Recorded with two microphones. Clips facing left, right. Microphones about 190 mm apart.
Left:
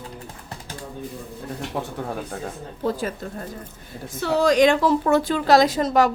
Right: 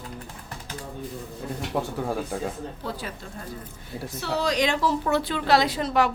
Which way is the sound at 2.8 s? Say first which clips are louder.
Left 13 dB; 45° left (ahead or behind).